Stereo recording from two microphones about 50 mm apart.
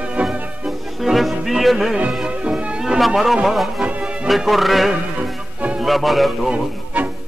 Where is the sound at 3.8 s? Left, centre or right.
Right.